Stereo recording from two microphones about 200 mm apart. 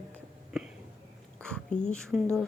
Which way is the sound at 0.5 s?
5° right (ahead or behind).